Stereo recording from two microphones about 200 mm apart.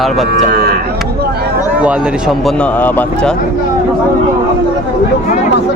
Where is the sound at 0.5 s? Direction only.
50° right (ahead or behind).